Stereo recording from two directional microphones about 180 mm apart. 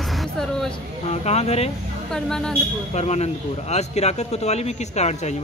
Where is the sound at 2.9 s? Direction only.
35° left (ahead or behind).